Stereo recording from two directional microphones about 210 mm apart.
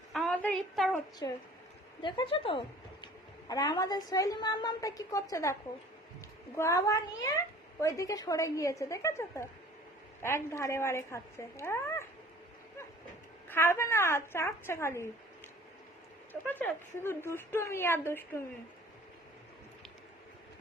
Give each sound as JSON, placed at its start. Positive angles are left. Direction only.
{"t": 0.1, "sound": "a sound", "side_deg": 0}
{"t": 1.2, "sound": "a woman's voice", "side_deg": 15}
{"t": 6.6, "sound": "a woman's voice", "side_deg": 15}
{"t": 13.5, "sound": "a woman's voice", "side_deg": 10}
{"t": 16.3, "sound": "a woman's voice", "side_deg": 10}